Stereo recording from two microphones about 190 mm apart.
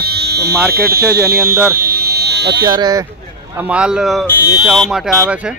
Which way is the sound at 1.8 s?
50° right (ahead or behind).